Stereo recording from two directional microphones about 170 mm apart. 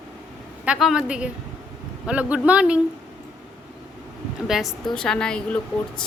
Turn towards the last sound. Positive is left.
turn(degrees=5)  # may be behind; listen again after turning